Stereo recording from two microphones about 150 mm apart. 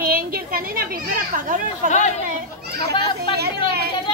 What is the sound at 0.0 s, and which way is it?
A child's voice, 80° right.